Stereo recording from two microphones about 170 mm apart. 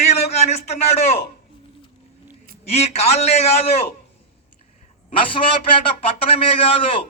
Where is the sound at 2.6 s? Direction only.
35° left (ahead or behind).